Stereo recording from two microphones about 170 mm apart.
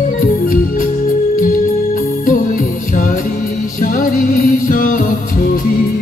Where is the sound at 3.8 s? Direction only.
50° left (ahead or behind).